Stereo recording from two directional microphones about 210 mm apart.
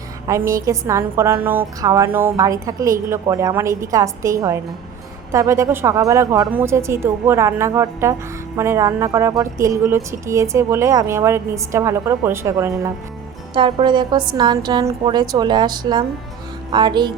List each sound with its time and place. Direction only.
0.3 s a woman's voice: 15° right (ahead or behind)